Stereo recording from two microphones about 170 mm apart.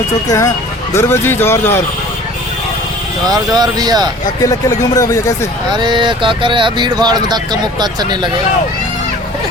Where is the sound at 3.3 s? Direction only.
25° right (ahead or behind).